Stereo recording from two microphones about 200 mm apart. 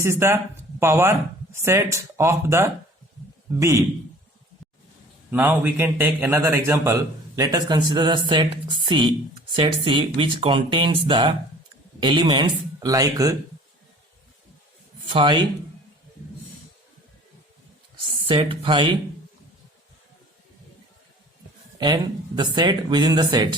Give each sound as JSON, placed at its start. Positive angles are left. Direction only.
{"t": 0.0, "sound": "a man's voice", "side_deg": -10}
{"t": 5.3, "sound": "a man's voice", "side_deg": -10}
{"t": 15.0, "sound": "speech", "side_deg": -25}
{"t": 18.3, "sound": "speech", "side_deg": -25}
{"t": 21.8, "sound": "speech", "side_deg": -20}